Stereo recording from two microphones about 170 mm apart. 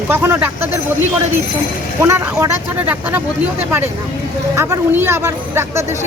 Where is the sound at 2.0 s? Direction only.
15° right (ahead or behind).